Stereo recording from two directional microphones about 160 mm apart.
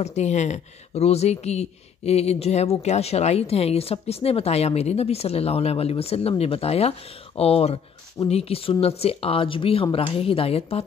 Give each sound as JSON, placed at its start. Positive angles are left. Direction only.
{"t": 0.0, "sound": "speech", "side_deg": 45}